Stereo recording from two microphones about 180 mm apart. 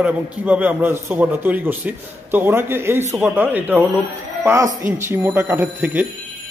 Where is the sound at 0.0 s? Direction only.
5° right (ahead or behind).